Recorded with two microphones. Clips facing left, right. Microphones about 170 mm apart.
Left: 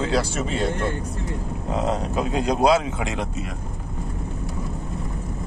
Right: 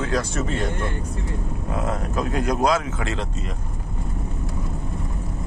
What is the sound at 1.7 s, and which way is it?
Speech, 20° left (ahead or behind).